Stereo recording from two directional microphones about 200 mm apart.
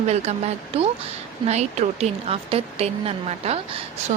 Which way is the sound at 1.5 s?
35° right (ahead or behind).